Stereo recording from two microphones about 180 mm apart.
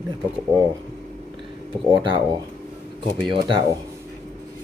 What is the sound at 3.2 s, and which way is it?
Speech, 25° right (ahead or behind).